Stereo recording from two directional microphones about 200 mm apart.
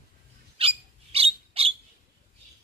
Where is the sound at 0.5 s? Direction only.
30° right (ahead or behind).